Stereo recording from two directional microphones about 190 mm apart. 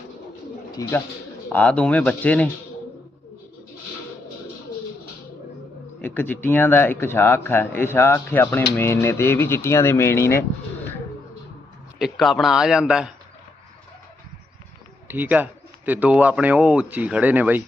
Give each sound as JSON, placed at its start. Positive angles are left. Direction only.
{"t": 0.7, "sound": "speech", "side_deg": 15}
{"t": 6.0, "sound": "speech", "side_deg": 10}
{"t": 11.9, "sound": "speech", "side_deg": 0}
{"t": 15.0, "sound": "speech", "side_deg": -10}